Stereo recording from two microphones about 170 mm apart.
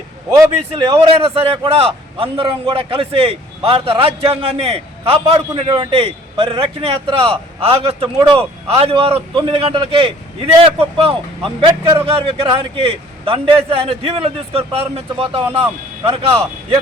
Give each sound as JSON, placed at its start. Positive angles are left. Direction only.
{"t": 0.9, "sound": "a man's voice", "side_deg": -35}